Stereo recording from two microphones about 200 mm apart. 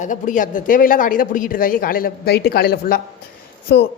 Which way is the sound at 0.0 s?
40° left (ahead or behind).